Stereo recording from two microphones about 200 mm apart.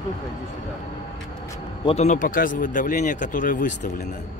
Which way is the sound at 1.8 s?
35° left (ahead or behind).